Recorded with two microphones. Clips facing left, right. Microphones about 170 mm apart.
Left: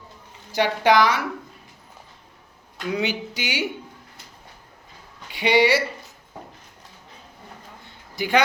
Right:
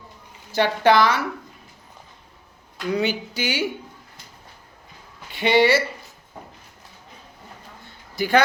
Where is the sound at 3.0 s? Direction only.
15° left (ahead or behind).